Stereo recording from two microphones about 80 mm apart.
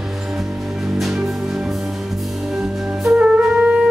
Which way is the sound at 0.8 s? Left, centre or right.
Centre.